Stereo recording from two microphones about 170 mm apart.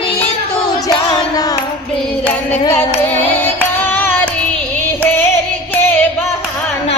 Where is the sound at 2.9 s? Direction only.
15° left (ahead or behind).